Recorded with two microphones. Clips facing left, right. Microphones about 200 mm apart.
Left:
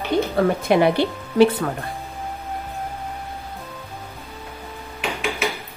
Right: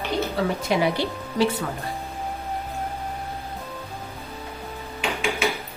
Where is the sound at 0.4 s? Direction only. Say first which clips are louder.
Left 6 dB; 55° left (ahead or behind).